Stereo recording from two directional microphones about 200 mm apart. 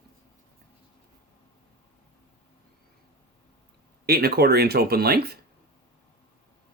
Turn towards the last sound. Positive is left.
turn(degrees=-50)  # may be behind; listen again after turning